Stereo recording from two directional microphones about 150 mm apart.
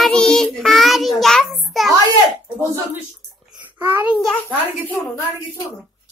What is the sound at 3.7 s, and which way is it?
Speech, 15° right (ahead or behind).